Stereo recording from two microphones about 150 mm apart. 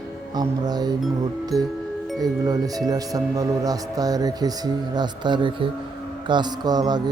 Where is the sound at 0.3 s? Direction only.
25° right (ahead or behind).